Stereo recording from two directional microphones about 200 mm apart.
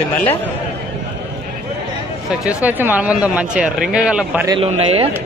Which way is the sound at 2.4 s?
10° right (ahead or behind).